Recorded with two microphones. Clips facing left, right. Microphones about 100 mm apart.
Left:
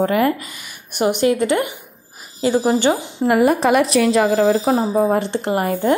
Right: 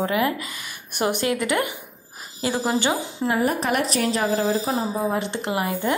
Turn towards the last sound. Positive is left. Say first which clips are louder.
# left 6 dB
turn(degrees=40)  # may be behind; listen again after turning